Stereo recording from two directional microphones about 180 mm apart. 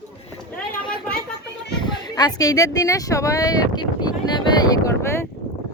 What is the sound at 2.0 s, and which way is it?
Speech, 20° left (ahead or behind).